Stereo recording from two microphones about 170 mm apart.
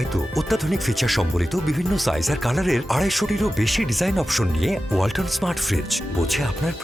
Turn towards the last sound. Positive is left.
turn(degrees=0)  # may be behind; listen again after turning